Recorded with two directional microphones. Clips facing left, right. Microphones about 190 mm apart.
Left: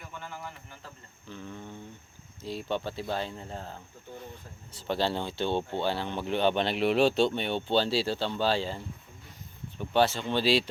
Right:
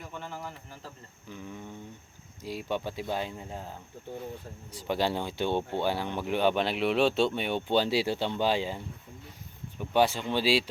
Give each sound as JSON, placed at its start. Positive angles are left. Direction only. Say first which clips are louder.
{"t": 0.2, "sound": "bird", "louder": "right 1 dB", "side_deg": -35}
{"t": 1.3, "sound": "a sound", "louder": "even", "side_deg": -10}
{"t": 2.4, "sound": "speech", "louder": "even", "side_deg": -10}